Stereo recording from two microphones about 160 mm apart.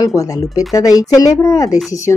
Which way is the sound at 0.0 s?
20° left (ahead or behind).